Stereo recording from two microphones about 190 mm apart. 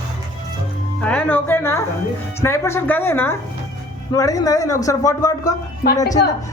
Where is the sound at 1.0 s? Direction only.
5° left (ahead or behind).